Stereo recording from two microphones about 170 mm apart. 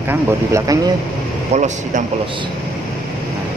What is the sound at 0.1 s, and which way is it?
Speech, 15° right (ahead or behind).